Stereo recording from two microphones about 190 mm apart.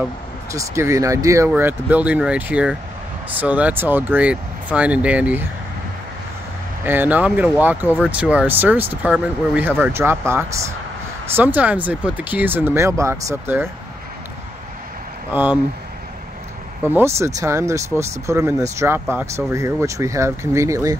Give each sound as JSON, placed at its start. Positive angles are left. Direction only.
{"t": 0.5, "sound": "speech", "side_deg": -15}
{"t": 6.8, "sound": "speech", "side_deg": -10}
{"t": 15.3, "sound": "speech", "side_deg": -10}
{"t": 16.9, "sound": "speech", "side_deg": -15}